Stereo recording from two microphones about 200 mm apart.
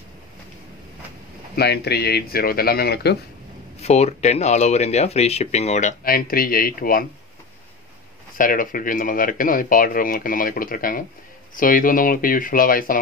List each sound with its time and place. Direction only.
1.5 s speech: 55° left (ahead or behind)
3.8 s speech: 35° left (ahead or behind)
8.4 s speech: 45° left (ahead or behind)